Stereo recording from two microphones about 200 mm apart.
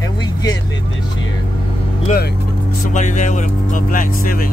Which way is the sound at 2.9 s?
40° left (ahead or behind).